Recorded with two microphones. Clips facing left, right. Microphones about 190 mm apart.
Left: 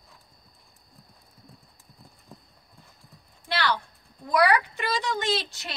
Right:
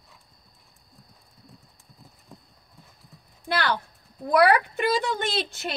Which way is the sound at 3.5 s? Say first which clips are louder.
Right 1 dB; 50° right (ahead or behind).